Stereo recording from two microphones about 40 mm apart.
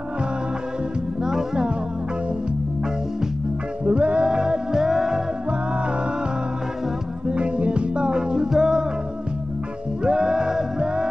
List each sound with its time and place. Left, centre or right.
1.2 s music: centre
3.8 s music: right
4.3 s music: centre
7.2 s music: right
10.0 s music: right